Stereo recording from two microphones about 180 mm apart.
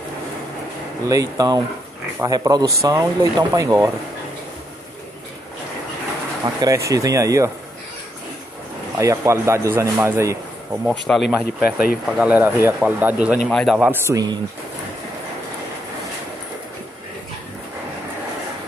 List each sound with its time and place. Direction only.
1.0 s speech: 20° right (ahead or behind)
6.4 s speech: 20° right (ahead or behind)
9.0 s a man's voice: 15° right (ahead or behind)
10.9 s a man's voice: centre (ahead or behind)
14.0 s speech: 20° right (ahead or behind)